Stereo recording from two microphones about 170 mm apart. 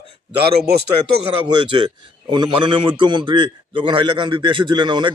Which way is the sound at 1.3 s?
30° right (ahead or behind).